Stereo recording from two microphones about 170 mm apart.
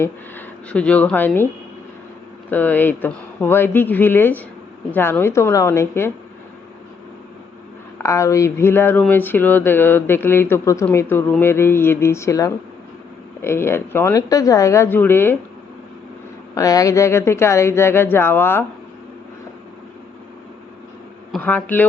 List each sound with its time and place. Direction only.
0.0 s speech: 10° left (ahead or behind)
2.5 s speech: 10° left (ahead or behind)
8.0 s speech: 15° left (ahead or behind)
16.6 s speech: 20° left (ahead or behind)
21.3 s speech: 10° left (ahead or behind)